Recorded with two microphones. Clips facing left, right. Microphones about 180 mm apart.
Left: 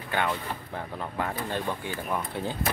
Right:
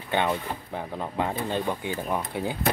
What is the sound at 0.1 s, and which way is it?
Speech, 20° right (ahead or behind).